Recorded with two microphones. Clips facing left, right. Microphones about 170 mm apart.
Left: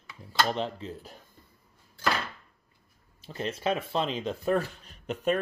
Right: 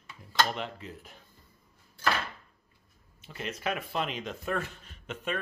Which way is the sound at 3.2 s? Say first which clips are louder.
Left 5 dB; 35° left (ahead or behind).